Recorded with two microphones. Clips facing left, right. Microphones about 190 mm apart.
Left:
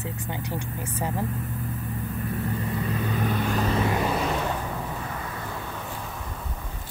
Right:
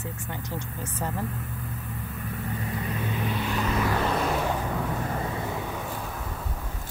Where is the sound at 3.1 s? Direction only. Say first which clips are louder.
Left 3 dB; 45° left (ahead or behind).